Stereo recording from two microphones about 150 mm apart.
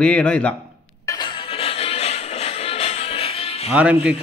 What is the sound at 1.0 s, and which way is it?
Music, 30° left (ahead or behind).